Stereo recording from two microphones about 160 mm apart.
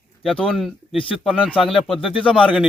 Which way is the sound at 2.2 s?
30° left (ahead or behind).